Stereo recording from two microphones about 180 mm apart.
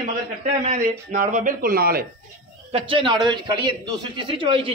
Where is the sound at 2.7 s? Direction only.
30° right (ahead or behind).